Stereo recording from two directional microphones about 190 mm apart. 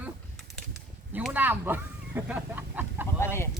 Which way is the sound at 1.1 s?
10° right (ahead or behind).